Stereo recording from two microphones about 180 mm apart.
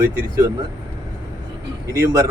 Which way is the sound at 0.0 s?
10° right (ahead or behind).